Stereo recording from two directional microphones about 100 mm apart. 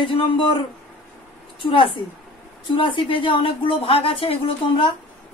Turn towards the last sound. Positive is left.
turn(degrees=65)  # may be behind; listen again after turning